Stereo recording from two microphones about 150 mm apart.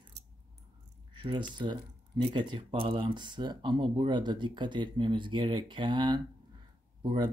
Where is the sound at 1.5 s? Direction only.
30° right (ahead or behind).